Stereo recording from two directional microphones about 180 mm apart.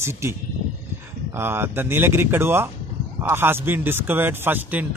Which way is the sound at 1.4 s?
10° right (ahead or behind).